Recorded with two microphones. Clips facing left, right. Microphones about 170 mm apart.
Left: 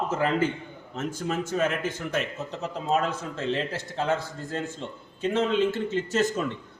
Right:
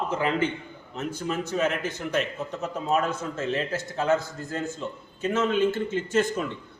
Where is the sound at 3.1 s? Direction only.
30° left (ahead or behind).